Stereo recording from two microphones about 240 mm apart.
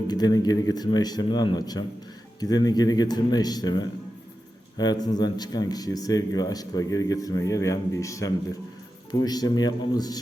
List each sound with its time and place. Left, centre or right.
0.1 s speech: centre